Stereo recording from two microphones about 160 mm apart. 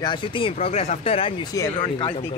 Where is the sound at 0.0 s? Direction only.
30° left (ahead or behind).